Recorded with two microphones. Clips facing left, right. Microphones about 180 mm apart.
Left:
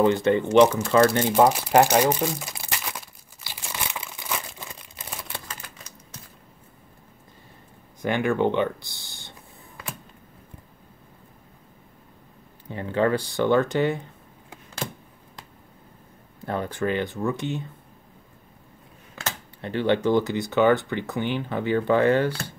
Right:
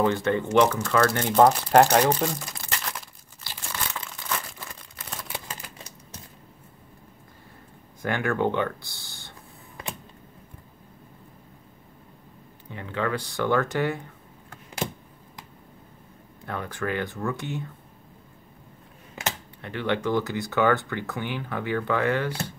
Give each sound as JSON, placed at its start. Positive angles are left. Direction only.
{"t": 0.0, "sound": "speech", "side_deg": 20}
{"t": 1.2, "sound": "crumpling", "side_deg": 10}
{"t": 8.0, "sound": "speech", "side_deg": 20}
{"t": 12.7, "sound": "speech", "side_deg": 35}
{"t": 16.4, "sound": "speech", "side_deg": 30}
{"t": 19.6, "sound": "speech", "side_deg": 30}